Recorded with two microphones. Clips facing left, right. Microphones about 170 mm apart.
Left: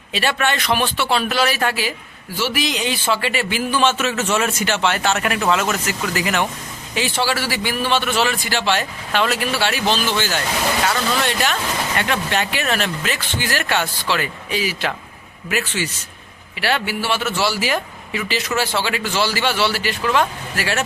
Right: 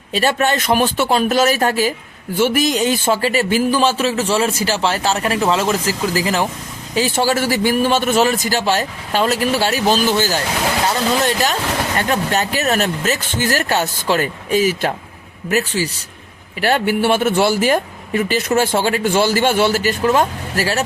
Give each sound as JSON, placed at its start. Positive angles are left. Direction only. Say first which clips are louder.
{"t": 0.1, "sound": "a man's voice", "louder": "right 4 dB", "side_deg": -40}
{"t": 16.6, "sound": "speech", "louder": "right 6 dB", "side_deg": -45}